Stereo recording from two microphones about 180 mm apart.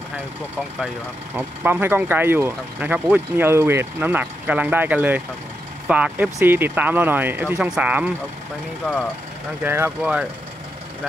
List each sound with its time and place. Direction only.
1.3 s speech: 10° right (ahead or behind)
8.8 s speech: 5° left (ahead or behind)
9.6 s speech: 15° right (ahead or behind)